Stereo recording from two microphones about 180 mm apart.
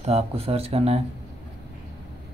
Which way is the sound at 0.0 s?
35° right (ahead or behind).